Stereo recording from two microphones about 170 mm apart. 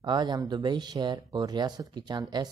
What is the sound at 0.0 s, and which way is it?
Speech, 25° right (ahead or behind).